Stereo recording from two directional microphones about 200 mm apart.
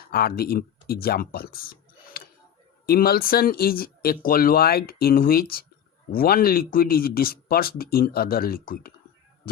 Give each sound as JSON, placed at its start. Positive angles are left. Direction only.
{"t": 0.1, "sound": "speech", "side_deg": 50}
{"t": 2.2, "sound": "a sound", "side_deg": 50}
{"t": 2.8, "sound": "speech", "side_deg": 50}